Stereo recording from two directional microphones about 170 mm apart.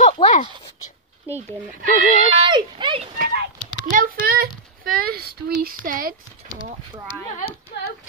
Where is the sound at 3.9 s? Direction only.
50° right (ahead or behind).